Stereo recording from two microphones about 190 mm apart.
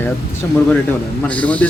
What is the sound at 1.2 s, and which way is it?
Speech, 5° left (ahead or behind).